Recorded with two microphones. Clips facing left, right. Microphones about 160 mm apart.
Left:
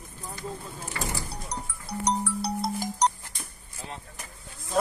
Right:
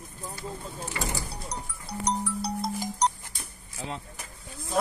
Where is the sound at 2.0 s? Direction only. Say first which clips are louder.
Left 2 dB; 65° left (ahead or behind).